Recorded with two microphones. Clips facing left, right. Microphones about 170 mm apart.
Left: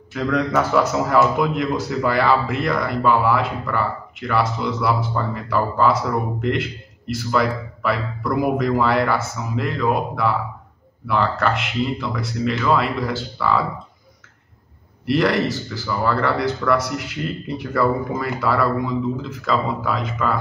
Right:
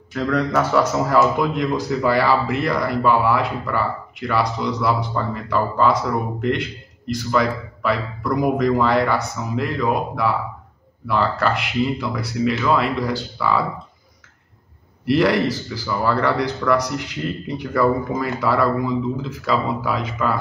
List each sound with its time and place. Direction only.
0.1 s a man's voice: centre (ahead or behind)
15.0 s a man's voice: centre (ahead or behind)